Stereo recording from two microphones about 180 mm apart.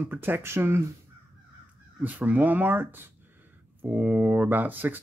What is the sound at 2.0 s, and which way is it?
Speech, 10° right (ahead or behind).